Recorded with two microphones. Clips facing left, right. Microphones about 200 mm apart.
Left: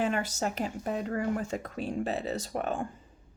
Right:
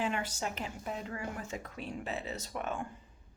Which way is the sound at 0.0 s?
45° left (ahead or behind).